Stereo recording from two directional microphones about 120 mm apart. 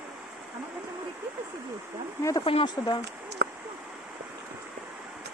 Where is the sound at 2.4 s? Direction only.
45° left (ahead or behind).